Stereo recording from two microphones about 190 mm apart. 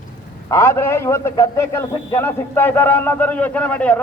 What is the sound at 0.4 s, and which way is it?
A man's voice, 15° left (ahead or behind).